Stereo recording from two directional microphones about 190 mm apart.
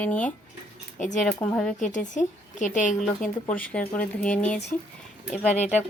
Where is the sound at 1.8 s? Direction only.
40° left (ahead or behind).